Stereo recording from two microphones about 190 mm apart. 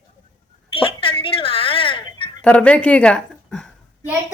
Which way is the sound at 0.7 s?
30° left (ahead or behind).